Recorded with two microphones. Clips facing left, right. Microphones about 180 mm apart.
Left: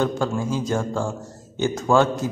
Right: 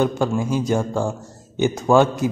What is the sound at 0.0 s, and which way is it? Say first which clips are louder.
A man's voice: right 3 dB; 15° right (ahead or behind).